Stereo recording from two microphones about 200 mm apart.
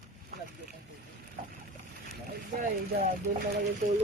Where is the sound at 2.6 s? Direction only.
45° right (ahead or behind).